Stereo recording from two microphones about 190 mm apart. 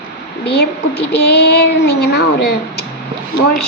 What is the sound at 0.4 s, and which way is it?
Speech, 60° left (ahead or behind).